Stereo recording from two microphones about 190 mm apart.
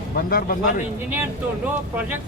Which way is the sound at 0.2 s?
50° left (ahead or behind).